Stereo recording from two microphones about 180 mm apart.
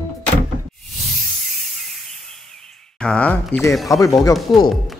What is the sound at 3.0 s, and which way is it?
Speech, 5° left (ahead or behind).